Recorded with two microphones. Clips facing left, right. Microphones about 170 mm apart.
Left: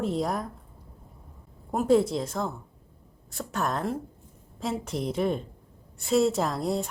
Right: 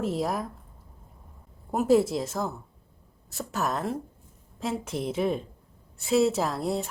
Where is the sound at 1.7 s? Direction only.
5° right (ahead or behind).